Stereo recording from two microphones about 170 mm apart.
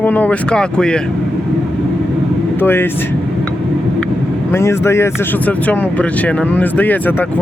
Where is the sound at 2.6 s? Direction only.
15° left (ahead or behind).